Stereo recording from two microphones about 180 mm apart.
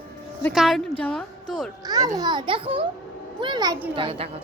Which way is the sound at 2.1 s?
25° right (ahead or behind).